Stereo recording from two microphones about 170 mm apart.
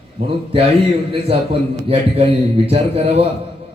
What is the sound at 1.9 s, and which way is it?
A man's voice, 35° right (ahead or behind).